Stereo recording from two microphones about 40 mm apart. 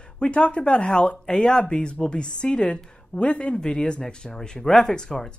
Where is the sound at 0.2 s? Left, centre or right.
Left.